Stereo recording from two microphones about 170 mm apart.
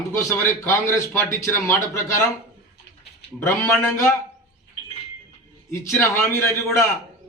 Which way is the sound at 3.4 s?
15° left (ahead or behind).